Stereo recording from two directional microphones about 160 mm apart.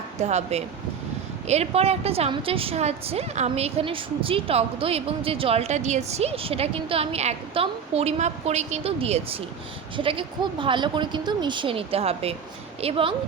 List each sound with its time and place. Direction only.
0.2 s a woman's voice: 45° right (ahead or behind)